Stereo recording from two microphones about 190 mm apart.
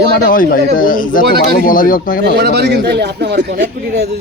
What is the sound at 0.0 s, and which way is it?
Speech, 50° left (ahead or behind).